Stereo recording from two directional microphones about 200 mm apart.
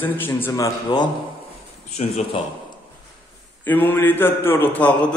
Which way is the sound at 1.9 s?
30° left (ahead or behind).